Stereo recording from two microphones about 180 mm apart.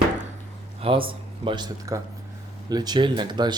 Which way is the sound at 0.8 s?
30° right (ahead or behind).